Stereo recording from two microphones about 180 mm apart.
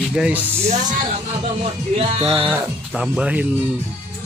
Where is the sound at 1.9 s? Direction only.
35° right (ahead or behind).